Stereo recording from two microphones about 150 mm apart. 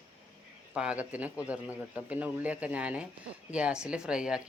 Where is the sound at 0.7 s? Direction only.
5° right (ahead or behind).